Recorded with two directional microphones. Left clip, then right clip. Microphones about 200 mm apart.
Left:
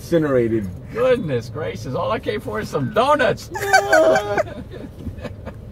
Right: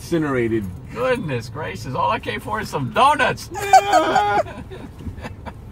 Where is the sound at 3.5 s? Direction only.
Centre (ahead or behind).